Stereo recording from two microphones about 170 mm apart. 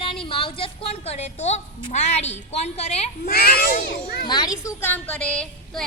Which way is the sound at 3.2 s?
60° left (ahead or behind).